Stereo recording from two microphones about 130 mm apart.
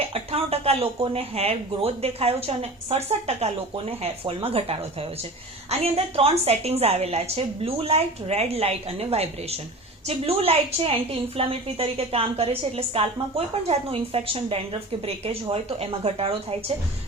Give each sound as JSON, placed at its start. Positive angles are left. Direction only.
{"t": 0.0, "sound": "a woman's voice", "side_deg": -50}